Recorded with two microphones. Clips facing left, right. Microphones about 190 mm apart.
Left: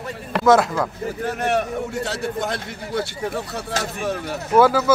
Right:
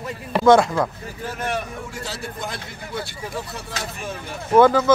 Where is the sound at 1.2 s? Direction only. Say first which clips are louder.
Left 4 dB; 65° left (ahead or behind).